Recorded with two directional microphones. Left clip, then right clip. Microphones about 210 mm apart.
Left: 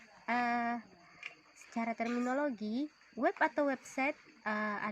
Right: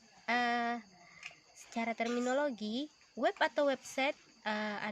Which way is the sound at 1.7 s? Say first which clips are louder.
Right 1 dB; 25° right (ahead or behind).